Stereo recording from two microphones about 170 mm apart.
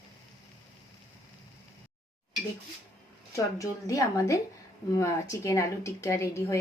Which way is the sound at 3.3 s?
20° left (ahead or behind).